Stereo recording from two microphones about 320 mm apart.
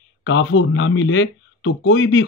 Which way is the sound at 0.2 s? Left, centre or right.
Left.